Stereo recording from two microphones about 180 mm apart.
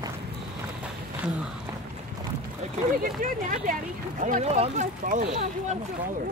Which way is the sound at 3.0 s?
45° right (ahead or behind).